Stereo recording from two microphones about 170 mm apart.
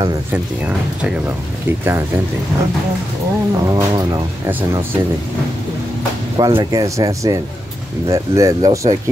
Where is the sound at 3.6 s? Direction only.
20° right (ahead or behind).